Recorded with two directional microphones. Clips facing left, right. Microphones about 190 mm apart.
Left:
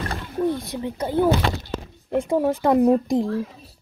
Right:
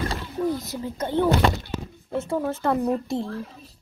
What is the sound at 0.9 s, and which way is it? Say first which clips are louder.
Speech: left 2 dB; 10° left (ahead or behind).